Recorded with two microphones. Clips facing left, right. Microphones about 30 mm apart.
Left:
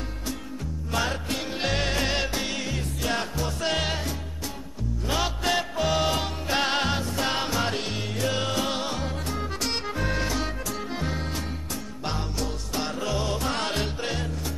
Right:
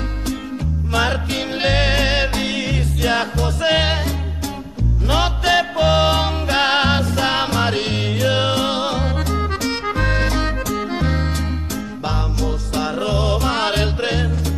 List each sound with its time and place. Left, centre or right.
0.9 s music: right
5.0 s music: right
12.9 s music: right